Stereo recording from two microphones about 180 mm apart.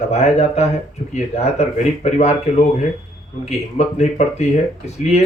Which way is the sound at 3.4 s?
40° left (ahead or behind).